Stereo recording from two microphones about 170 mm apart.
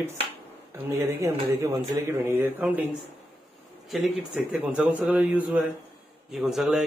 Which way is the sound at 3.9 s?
Centre (ahead or behind).